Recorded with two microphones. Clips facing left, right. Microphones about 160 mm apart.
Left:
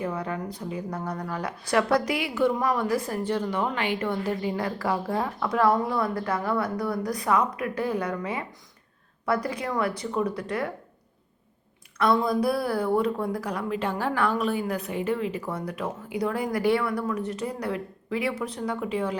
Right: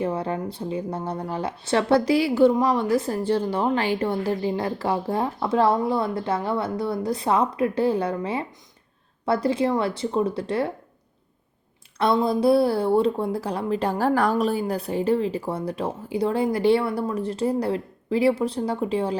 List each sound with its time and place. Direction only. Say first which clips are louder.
0.0 s a woman's voice: right 4 dB; 30° right (ahead or behind)
11.9 s speech: right 2 dB; 25° right (ahead or behind)